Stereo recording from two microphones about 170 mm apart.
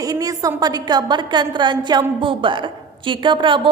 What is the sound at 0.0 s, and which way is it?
A woman's voice, 20° right (ahead or behind).